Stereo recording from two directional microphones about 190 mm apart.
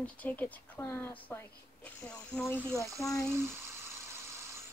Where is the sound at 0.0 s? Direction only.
10° left (ahead or behind).